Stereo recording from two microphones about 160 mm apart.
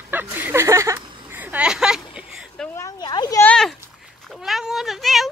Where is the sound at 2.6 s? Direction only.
20° left (ahead or behind).